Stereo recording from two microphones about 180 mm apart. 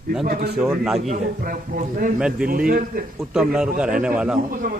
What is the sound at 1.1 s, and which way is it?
A man's voice, 50° right (ahead or behind).